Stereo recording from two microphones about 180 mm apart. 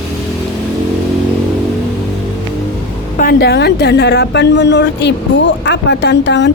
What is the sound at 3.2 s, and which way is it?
A woman's voice, 60° left (ahead or behind).